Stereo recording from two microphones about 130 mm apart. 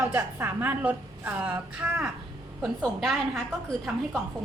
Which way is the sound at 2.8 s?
Centre (ahead or behind).